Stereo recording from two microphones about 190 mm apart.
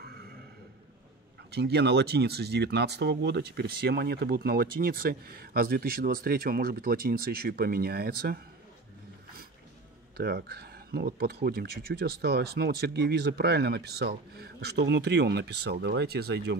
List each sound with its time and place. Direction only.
0.0 s a sound: 55° right (ahead or behind)
1.5 s speech: 60° right (ahead or behind)
10.1 s speech: 55° right (ahead or behind)